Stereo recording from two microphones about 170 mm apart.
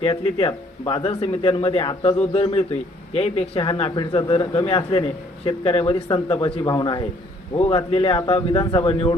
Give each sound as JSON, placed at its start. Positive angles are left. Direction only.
{"t": 0.0, "sound": "a man's voice", "side_deg": 35}
{"t": 7.5, "sound": "a man's voice", "side_deg": 35}